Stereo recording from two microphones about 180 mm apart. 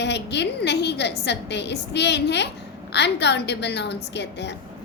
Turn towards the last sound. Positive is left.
turn(degrees=70)  # may be behind; listen again after turning